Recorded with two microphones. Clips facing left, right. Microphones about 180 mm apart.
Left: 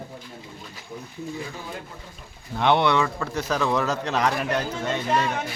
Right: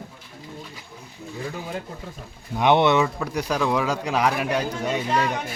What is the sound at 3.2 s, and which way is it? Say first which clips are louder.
Speech: right 1 dB; 10° right (ahead or behind).